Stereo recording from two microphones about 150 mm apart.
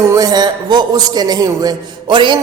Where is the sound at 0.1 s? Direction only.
25° right (ahead or behind).